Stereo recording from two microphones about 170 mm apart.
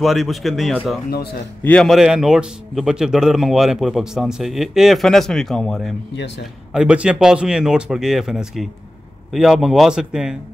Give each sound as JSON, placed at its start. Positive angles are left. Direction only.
{"t": 0.0, "sound": "a man's voice", "side_deg": 0}
{"t": 6.1, "sound": "a man's voice", "side_deg": 90}
{"t": 6.7, "sound": "a man's voice", "side_deg": -5}